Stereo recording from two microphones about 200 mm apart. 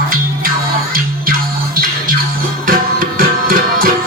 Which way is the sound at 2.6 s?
45° right (ahead or behind).